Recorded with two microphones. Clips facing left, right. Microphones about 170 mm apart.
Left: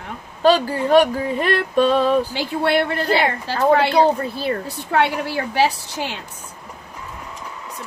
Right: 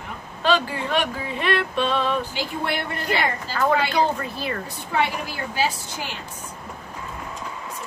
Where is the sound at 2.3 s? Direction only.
75° left (ahead or behind).